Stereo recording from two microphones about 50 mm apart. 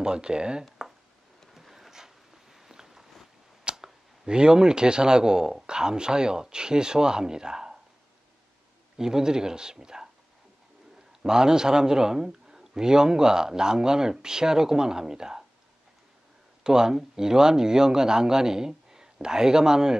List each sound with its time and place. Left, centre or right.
0.0 s speech: centre
1.5 s a sound: centre
3.6 s speech: centre
8.9 s speech: centre
11.2 s speech: centre
16.6 s speech: centre